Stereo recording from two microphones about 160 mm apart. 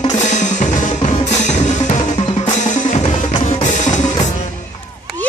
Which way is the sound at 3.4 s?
50° left (ahead or behind).